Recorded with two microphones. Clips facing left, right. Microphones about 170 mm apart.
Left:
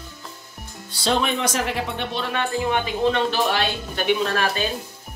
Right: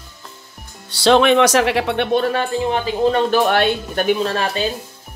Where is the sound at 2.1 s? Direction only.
45° right (ahead or behind).